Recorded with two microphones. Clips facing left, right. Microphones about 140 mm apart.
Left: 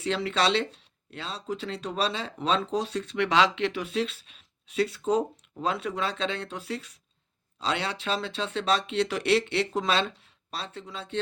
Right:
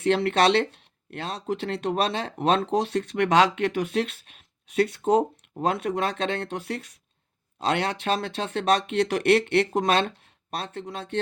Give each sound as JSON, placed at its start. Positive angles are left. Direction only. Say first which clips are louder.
{"t": 0.0, "sound": "speech", "louder": "right 6 dB", "side_deg": -55}